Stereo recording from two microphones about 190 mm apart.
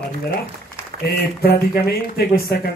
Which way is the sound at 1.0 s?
55° left (ahead or behind).